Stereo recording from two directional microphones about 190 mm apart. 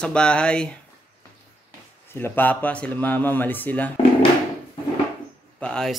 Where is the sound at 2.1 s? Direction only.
10° left (ahead or behind).